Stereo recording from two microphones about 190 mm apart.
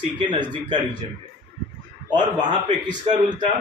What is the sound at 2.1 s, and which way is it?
Speech, 25° right (ahead or behind).